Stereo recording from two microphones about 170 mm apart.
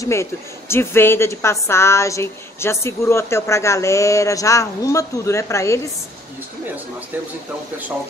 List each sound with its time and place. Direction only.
0.0 s a woman's voice: 15° left (ahead or behind)